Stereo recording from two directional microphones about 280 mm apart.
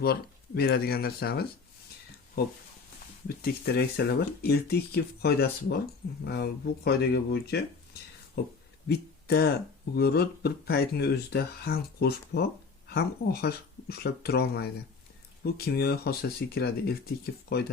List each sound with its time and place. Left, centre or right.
0.0 s speech: left
3.2 s speech: left
8.9 s speech: left